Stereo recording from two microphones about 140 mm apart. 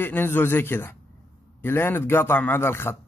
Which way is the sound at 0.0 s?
15° left (ahead or behind).